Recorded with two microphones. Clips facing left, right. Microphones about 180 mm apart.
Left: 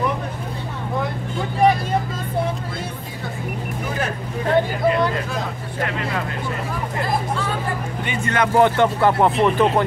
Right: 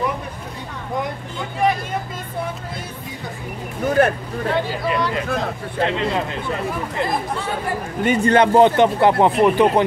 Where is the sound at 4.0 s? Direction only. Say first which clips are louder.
Right 11 dB; 60° right (ahead or behind).